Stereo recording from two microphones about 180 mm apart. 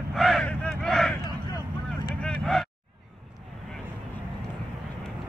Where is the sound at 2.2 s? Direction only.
5° left (ahead or behind).